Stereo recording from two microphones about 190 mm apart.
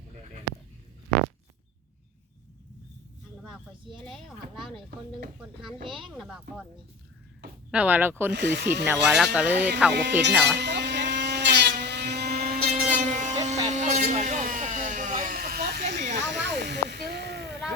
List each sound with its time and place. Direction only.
4.0 s speech: centre (ahead or behind)
7.7 s speech: 10° right (ahead or behind)
8.3 s speech: 65° right (ahead or behind)
8.9 s speech: 5° right (ahead or behind)
9.9 s speech: 65° right (ahead or behind)
10.4 s a sound: 65° right (ahead or behind)
12.6 s motorboat: 40° right (ahead or behind)
13.4 s a sound: 35° right (ahead or behind); by 17.5 s 60° right (ahead or behind)